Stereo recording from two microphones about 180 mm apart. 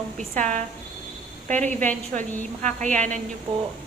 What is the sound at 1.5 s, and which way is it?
A woman's voice, 40° right (ahead or behind).